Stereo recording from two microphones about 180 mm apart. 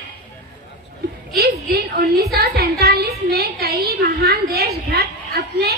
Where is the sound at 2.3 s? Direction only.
60° right (ahead or behind).